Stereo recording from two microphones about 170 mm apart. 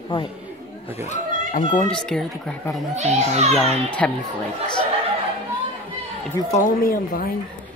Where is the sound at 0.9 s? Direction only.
40° left (ahead or behind).